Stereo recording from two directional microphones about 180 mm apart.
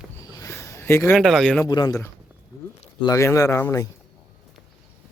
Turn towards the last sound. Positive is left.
turn(degrees=15)  # may be behind; listen again after turning